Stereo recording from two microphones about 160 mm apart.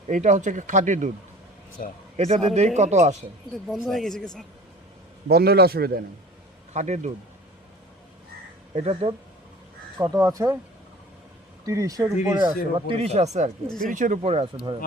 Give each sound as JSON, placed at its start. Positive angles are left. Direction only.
{"t": 0.1, "sound": "speech", "side_deg": -50}
{"t": 1.8, "sound": "a man's voice", "side_deg": 65}
{"t": 2.1, "sound": "speech", "side_deg": -50}
{"t": 3.5, "sound": "speech", "side_deg": 0}
{"t": 5.3, "sound": "a man's voice", "side_deg": -80}
{"t": 6.7, "sound": "speech", "side_deg": -45}
{"t": 8.7, "sound": "speech", "side_deg": -40}
{"t": 10.0, "sound": "speech", "side_deg": -20}
{"t": 11.6, "sound": "speech", "side_deg": -20}
{"t": 12.9, "sound": "speech", "side_deg": -40}
{"t": 13.7, "sound": "speech", "side_deg": 5}
{"t": 13.9, "sound": "speech", "side_deg": -50}